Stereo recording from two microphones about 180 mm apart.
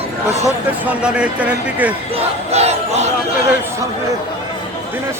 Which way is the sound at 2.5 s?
35° right (ahead or behind).